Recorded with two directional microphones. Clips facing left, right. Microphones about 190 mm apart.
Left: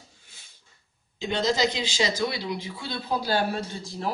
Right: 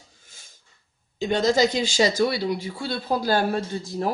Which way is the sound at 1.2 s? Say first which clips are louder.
Right 5 dB; 45° right (ahead or behind).